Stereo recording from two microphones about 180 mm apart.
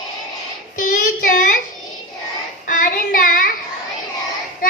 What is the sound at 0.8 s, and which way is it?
Child singing, 45° left (ahead or behind).